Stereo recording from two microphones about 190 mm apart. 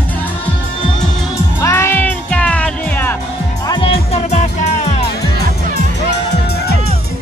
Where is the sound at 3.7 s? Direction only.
30° left (ahead or behind).